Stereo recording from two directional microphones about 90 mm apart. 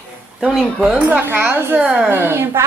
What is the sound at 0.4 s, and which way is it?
Speech, 5° right (ahead or behind).